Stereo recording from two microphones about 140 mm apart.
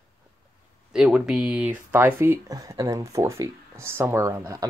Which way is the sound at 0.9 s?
5° right (ahead or behind).